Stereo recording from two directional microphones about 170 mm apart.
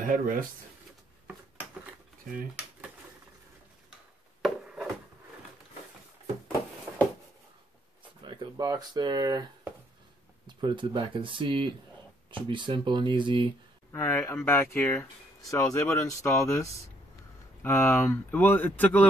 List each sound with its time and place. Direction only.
0.0 s speech: 55° right (ahead or behind)
4.4 s a sound: centre (ahead or behind)
8.2 s speech: 25° right (ahead or behind)
13.9 s speech: 10° left (ahead or behind)